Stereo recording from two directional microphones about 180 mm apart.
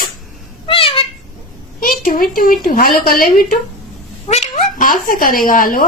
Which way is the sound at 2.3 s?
50° left (ahead or behind).